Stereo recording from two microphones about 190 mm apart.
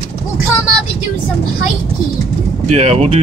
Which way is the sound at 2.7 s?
35° right (ahead or behind).